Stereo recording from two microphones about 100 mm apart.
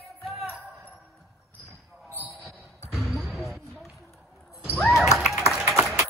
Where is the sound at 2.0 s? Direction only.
25° left (ahead or behind).